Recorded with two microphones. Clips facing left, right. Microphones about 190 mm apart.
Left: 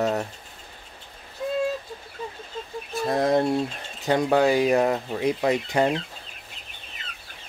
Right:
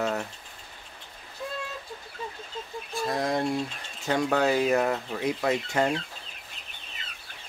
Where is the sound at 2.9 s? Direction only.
25° left (ahead or behind).